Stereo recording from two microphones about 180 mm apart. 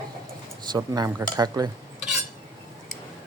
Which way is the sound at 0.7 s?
20° right (ahead or behind).